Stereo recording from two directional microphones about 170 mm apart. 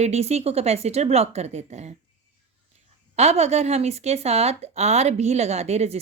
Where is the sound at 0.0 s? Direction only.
40° right (ahead or behind).